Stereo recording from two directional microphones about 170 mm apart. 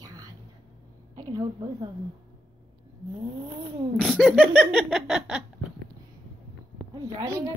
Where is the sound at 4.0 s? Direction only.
5° left (ahead or behind).